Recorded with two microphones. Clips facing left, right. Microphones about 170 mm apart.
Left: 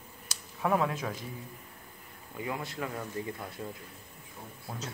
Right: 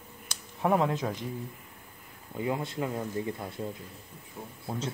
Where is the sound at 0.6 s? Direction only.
20° right (ahead or behind).